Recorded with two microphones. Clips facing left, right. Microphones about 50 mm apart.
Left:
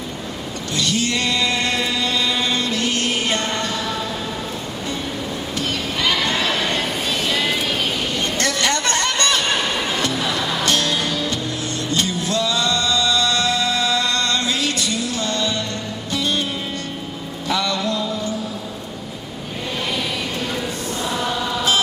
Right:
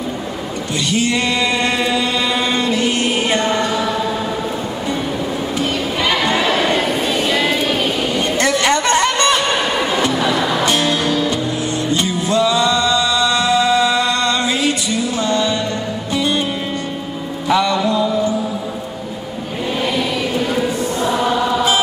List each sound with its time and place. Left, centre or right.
0.8 s chant: centre
5.6 s neigh: centre
11.9 s music: centre
17.5 s music: centre
20.3 s choir: centre